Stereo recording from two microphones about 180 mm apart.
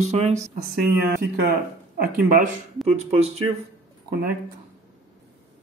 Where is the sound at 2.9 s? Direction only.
35° right (ahead or behind).